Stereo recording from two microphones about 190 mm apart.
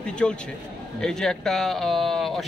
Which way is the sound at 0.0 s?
5° left (ahead or behind).